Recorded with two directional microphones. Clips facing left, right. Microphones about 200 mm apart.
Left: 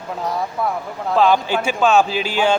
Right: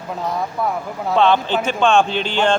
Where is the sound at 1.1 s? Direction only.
5° left (ahead or behind).